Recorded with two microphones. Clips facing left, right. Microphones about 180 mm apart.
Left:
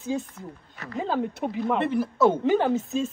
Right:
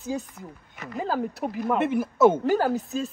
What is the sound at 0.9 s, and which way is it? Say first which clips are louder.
Speech: left 1 dB; 5° right (ahead or behind).